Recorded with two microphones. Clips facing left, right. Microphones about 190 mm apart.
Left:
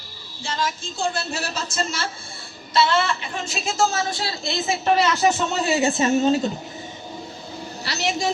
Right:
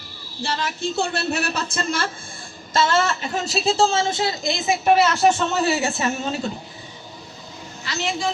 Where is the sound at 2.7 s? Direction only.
45° right (ahead or behind); by 5.1 s 15° right (ahead or behind).